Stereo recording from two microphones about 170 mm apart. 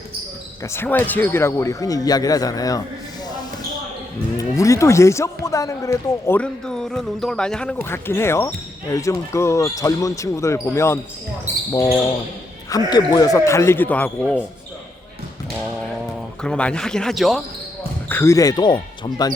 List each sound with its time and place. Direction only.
0.6 s speech: 15° left (ahead or behind)
4.4 s speech: 20° left (ahead or behind)
16.4 s speech: 5° left (ahead or behind)
18.1 s speech: 15° left (ahead or behind)